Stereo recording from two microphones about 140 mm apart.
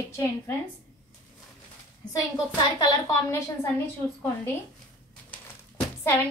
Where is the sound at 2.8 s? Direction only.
25° left (ahead or behind).